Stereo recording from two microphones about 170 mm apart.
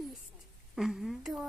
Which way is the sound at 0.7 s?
Centre (ahead or behind).